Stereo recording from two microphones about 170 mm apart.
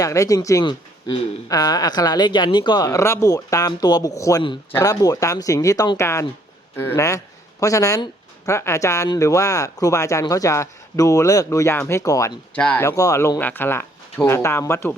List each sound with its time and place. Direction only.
0.0 s speech: 20° left (ahead or behind)
12.5 s speech: 10° left (ahead or behind)